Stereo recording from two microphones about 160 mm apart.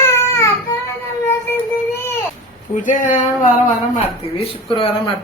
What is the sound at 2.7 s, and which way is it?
Speech, 55° left (ahead or behind).